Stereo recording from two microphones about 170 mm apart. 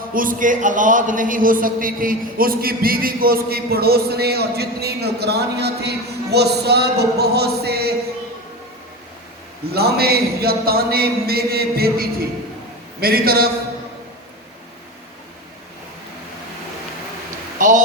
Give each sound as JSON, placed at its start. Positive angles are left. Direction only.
{"t": 0.1, "sound": "a man's voice", "side_deg": -55}
{"t": 9.7, "sound": "a man's voice", "side_deg": -65}